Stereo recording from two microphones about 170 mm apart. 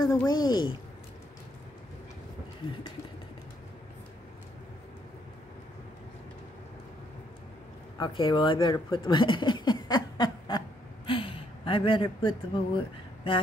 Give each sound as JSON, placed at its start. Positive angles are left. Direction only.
{"t": 0.3, "sound": "speech", "side_deg": 25}
{"t": 8.0, "sound": "speech", "side_deg": 25}